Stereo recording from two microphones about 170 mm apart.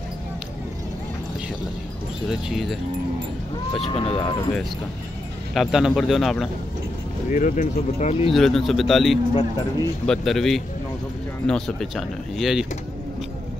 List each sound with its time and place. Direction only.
2.2 s speech: centre (ahead or behind)
3.8 s speech: 35° left (ahead or behind)
5.5 s speech: centre (ahead or behind)
7.2 s speech: 50° left (ahead or behind)
8.3 s speech: centre (ahead or behind)